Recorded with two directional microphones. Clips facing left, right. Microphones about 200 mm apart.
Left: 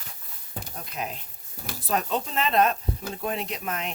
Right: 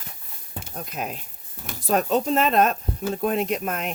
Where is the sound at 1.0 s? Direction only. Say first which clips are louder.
Right 1 dB; 50° right (ahead or behind).